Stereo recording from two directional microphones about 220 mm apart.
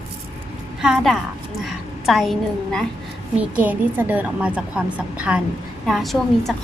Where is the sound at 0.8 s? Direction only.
5° right (ahead or behind).